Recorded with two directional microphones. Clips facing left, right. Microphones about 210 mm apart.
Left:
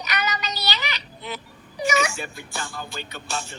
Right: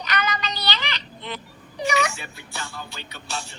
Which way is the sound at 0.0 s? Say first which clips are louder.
Right 1 dB; 10° left (ahead or behind).